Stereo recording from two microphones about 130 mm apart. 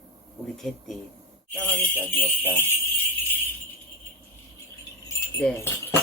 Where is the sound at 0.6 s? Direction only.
Centre (ahead or behind).